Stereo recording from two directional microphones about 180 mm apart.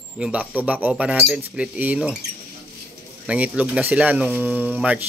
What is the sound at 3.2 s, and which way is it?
Speech, 10° right (ahead or behind).